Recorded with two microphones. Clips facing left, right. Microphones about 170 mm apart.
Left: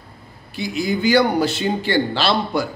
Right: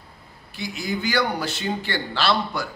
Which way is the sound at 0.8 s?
25° left (ahead or behind).